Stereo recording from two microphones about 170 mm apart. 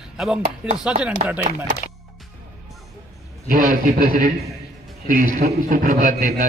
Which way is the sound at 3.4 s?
55° right (ahead or behind).